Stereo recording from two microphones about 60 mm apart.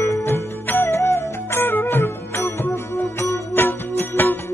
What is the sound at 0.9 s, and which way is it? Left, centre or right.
Music, left.